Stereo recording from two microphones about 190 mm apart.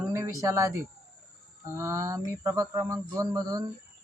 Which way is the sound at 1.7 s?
15° right (ahead or behind).